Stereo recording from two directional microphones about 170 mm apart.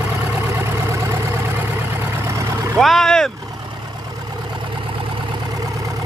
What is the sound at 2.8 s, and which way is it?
Vehicle, centre (ahead or behind).